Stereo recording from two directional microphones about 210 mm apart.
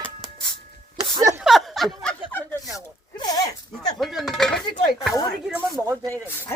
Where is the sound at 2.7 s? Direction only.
15° left (ahead or behind).